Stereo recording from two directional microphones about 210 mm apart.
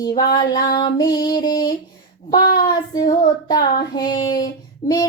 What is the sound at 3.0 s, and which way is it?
Child singing, 20° left (ahead or behind).